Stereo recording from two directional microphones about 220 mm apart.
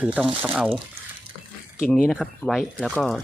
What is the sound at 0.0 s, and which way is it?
Speech, 5° right (ahead or behind).